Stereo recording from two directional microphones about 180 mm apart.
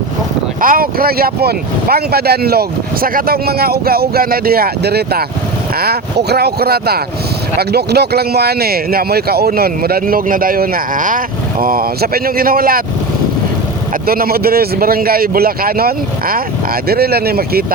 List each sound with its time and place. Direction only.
0.6 s speech: 50° right (ahead or behind)
14.1 s speech: 55° right (ahead or behind)